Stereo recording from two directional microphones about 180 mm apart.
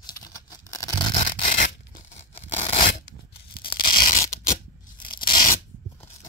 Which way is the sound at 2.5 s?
35° left (ahead or behind).